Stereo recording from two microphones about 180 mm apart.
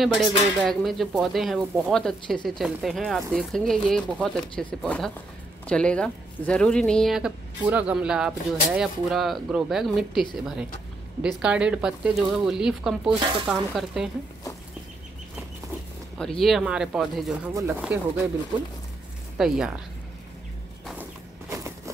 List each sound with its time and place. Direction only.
0.0 s speech: centre (ahead or behind)
16.2 s speech: centre (ahead or behind)
19.3 s speech: 5° right (ahead or behind)
21.5 s a sound: 15° right (ahead or behind)